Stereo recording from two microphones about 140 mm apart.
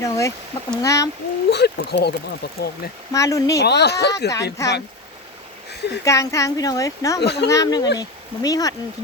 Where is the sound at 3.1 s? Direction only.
25° left (ahead or behind).